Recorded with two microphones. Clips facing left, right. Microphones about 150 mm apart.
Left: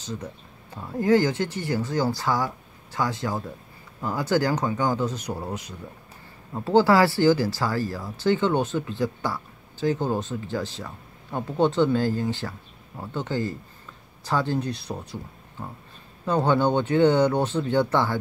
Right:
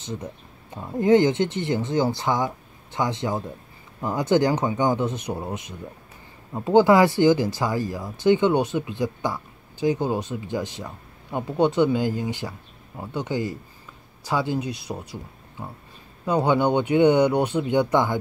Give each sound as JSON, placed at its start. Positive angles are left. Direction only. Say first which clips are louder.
{"t": 0.0, "sound": "speech", "louder": "right 1 dB", "side_deg": -20}